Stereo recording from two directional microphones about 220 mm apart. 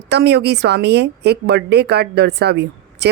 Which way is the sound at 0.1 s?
50° right (ahead or behind).